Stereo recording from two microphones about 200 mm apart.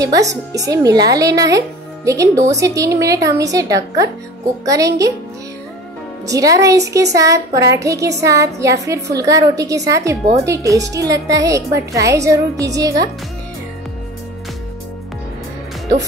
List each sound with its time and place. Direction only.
0.0 s a woman's voice: 15° right (ahead or behind)
6.2 s a woman's voice: 15° right (ahead or behind)